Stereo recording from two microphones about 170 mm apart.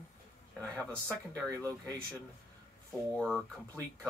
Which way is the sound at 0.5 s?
10° left (ahead or behind).